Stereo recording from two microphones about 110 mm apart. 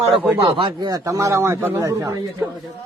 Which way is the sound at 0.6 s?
40° right (ahead or behind).